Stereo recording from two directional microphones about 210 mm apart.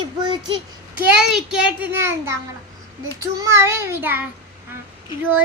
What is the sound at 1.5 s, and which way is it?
Child singing, 5° right (ahead or behind).